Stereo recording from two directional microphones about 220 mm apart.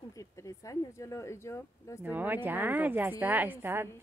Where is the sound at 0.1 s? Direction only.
15° left (ahead or behind).